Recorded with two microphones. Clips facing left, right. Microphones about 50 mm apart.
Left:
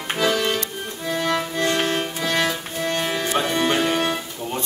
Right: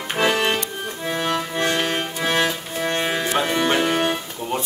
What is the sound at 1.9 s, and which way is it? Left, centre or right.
Music, right.